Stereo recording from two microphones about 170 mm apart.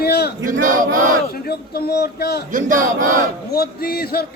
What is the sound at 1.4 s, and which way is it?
Speech, 65° left (ahead or behind).